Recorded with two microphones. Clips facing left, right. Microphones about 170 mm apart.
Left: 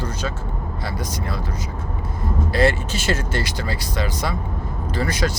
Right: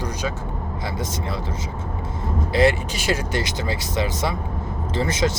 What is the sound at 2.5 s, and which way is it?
Speech, 15° right (ahead or behind).